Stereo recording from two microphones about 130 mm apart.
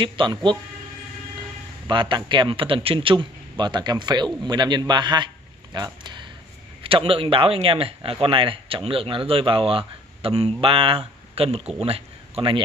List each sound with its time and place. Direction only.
0.0 s a man's voice: 35° right (ahead or behind)
1.9 s a man's voice: 35° right (ahead or behind)
6.8 s speech: 45° right (ahead or behind)